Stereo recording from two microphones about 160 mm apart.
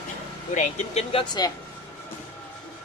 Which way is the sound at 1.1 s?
25° left (ahead or behind).